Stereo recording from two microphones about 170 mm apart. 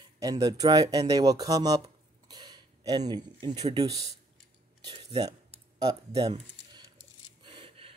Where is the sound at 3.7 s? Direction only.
20° right (ahead or behind).